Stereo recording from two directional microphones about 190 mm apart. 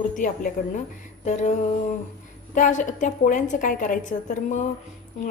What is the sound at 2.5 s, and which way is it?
A woman's voice, 40° left (ahead or behind).